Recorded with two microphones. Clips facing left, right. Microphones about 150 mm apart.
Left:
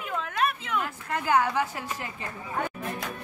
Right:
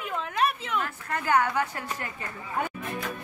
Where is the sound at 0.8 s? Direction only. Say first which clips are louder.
Left 1 dB; 10° left (ahead or behind).